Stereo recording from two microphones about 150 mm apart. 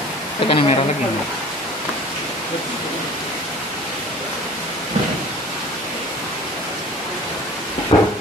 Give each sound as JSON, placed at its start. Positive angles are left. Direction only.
{"t": 0.5, "sound": "speech", "side_deg": 40}
{"t": 7.9, "sound": "steam", "side_deg": 30}